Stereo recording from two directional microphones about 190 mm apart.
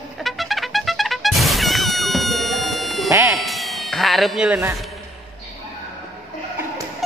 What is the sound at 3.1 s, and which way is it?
Cat, 15° right (ahead or behind).